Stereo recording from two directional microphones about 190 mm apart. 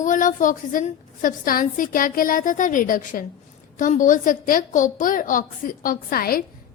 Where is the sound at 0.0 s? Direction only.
45° left (ahead or behind).